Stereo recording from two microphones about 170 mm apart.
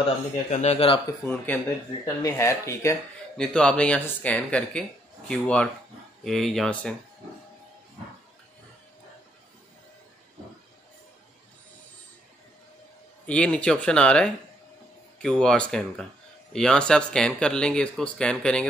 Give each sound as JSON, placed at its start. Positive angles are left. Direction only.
{"t": 0.5, "sound": "speech", "side_deg": 40}
{"t": 1.3, "sound": "speech", "side_deg": 10}
{"t": 3.3, "sound": "speech", "side_deg": 5}
{"t": 13.2, "sound": "speech", "side_deg": 5}